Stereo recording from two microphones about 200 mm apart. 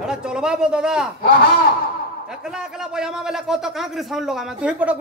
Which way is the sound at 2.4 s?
5° right (ahead or behind).